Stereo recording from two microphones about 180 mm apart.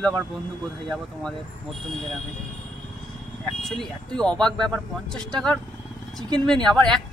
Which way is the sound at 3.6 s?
Centre (ahead or behind).